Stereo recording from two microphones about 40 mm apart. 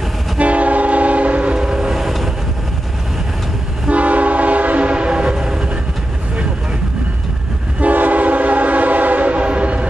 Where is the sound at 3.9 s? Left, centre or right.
Right.